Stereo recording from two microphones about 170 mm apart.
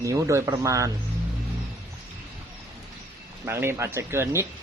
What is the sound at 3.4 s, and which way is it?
Speech, 15° right (ahead or behind).